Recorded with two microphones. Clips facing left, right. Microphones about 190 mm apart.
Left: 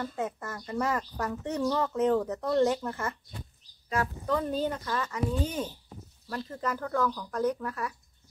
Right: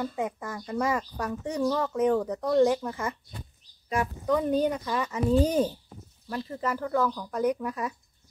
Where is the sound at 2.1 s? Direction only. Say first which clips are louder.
Right 2 dB; 5° left (ahead or behind).